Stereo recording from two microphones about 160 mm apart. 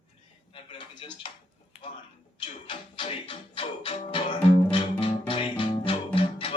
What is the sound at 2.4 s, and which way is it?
Music, 30° left (ahead or behind).